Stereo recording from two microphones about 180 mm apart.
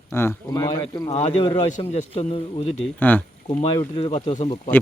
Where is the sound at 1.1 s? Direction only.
35° left (ahead or behind).